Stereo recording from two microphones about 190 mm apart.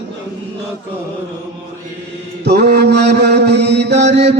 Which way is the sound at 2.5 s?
60° right (ahead or behind).